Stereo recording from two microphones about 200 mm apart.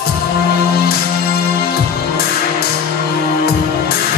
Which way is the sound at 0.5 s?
50° left (ahead or behind).